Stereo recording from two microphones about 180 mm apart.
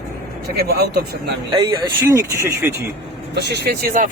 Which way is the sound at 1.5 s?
25° right (ahead or behind).